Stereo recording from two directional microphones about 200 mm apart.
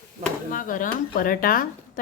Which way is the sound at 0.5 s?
40° left (ahead or behind).